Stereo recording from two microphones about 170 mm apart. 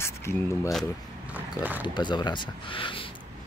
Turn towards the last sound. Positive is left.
turn(degrees=30)  # may be behind; listen again after turning